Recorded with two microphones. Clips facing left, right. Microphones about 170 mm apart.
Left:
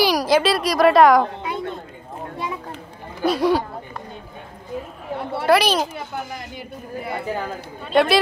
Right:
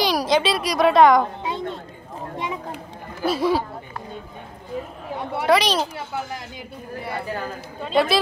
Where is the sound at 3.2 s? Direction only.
Centre (ahead or behind).